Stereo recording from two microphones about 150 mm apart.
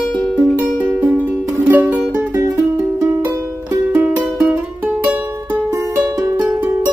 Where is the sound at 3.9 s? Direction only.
15° right (ahead or behind).